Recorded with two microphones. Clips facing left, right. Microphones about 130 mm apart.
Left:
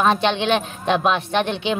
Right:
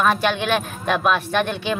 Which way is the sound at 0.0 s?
25° left (ahead or behind).